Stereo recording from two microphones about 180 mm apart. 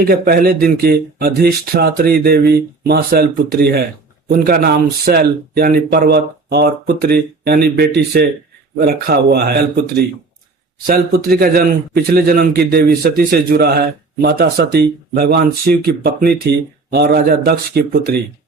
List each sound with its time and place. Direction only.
0.0 s a man's voice: 55° right (ahead or behind)
10.8 s a man's voice: 55° right (ahead or behind)